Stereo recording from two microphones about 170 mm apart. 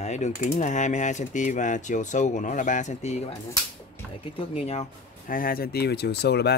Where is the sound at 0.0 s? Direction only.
40° left (ahead or behind).